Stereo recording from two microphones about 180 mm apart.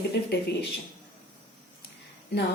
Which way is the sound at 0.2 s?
70° left (ahead or behind).